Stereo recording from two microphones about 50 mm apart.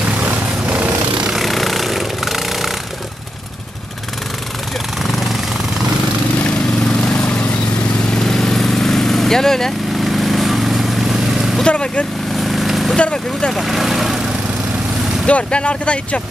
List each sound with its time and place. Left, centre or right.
0.2 s vehicle: right
1.3 s vehicle: centre
7.0 s vehicle: left
8.1 s vehicle: centre
11.6 s vehicle: left
12.4 s vehicle: centre
12.9 s speech: centre
13.5 s speech: centre
15.2 s speech: left